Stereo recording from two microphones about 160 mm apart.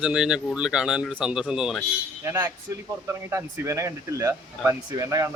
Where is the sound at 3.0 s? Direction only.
15° right (ahead or behind).